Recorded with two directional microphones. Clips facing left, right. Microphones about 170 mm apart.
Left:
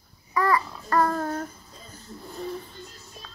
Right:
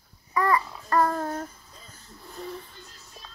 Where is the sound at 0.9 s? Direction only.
10° right (ahead or behind).